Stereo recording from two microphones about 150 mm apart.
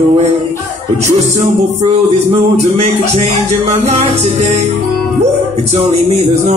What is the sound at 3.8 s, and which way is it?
Speech, 45° right (ahead or behind).